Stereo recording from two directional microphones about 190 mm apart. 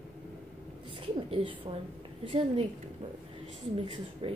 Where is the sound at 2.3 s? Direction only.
25° right (ahead or behind).